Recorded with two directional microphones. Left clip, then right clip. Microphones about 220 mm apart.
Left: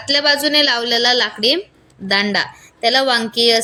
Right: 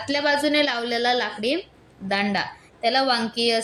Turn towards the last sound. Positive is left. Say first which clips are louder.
# left 7 dB
turn(degrees=50)  # may be behind; listen again after turning